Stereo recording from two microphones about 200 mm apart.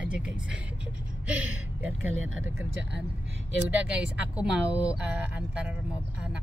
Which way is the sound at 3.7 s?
5° right (ahead or behind).